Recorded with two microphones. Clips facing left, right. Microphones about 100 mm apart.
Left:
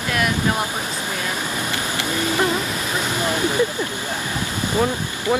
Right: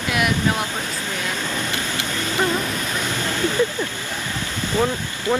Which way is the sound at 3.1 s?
15° left (ahead or behind).